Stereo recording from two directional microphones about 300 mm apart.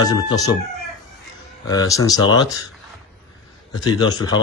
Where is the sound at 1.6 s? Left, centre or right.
Centre.